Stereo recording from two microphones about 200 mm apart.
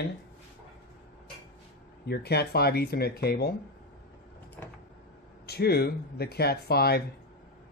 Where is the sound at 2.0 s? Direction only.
55° left (ahead or behind).